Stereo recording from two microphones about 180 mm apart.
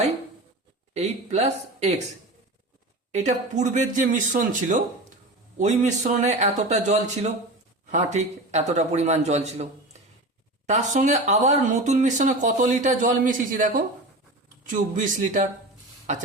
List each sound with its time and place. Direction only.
0.9 s a man's voice: 35° right (ahead or behind)
3.1 s a man's voice: 40° right (ahead or behind)
10.7 s speech: 40° right (ahead or behind)